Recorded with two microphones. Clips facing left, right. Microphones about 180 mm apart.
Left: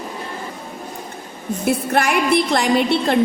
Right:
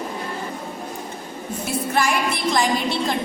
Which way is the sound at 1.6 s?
60° left (ahead or behind).